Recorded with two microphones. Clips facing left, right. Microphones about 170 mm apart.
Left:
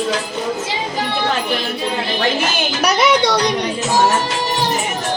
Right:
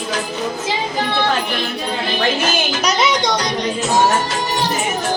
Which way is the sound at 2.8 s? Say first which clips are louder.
Left 5 dB; 60° left (ahead or behind).